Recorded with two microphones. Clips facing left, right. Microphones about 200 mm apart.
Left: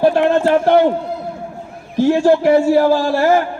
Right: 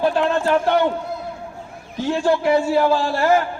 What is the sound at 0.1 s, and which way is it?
Speech, 55° left (ahead or behind).